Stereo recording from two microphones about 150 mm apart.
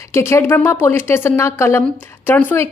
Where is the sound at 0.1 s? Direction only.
15° left (ahead or behind).